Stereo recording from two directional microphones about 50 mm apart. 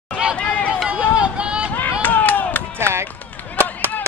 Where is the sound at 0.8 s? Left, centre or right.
Right.